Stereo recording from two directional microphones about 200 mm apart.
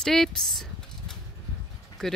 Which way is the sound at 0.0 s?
Centre (ahead or behind).